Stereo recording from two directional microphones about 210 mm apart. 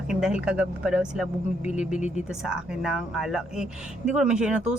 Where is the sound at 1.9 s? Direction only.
35° left (ahead or behind).